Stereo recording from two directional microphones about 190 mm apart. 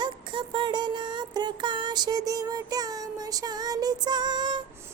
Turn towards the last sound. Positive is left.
turn(degrees=-25)  # may be behind; listen again after turning